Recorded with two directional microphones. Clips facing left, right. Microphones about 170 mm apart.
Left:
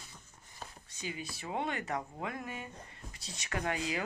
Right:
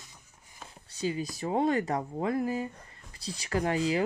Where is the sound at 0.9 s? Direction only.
35° right (ahead or behind).